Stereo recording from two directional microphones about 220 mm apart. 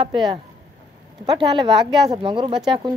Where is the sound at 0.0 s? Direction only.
20° right (ahead or behind).